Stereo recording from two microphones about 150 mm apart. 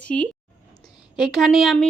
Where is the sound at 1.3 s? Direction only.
Centre (ahead or behind).